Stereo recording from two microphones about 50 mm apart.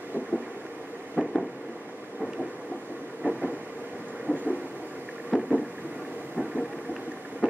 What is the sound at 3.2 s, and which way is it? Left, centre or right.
Train, right.